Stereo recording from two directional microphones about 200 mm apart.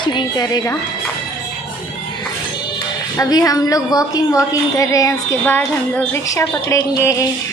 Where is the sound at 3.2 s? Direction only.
20° left (ahead or behind).